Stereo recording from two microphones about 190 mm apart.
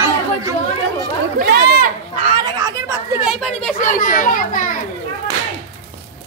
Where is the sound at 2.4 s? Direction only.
20° right (ahead or behind).